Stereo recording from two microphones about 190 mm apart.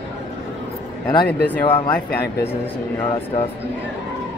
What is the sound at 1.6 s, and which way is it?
Speech, 25° left (ahead or behind).